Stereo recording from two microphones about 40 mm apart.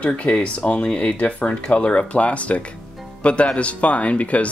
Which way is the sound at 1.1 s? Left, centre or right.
Left.